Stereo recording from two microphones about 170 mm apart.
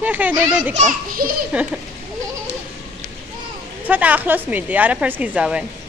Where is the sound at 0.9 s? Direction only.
55° right (ahead or behind).